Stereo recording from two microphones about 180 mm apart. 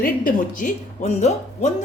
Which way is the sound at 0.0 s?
50° left (ahead or behind).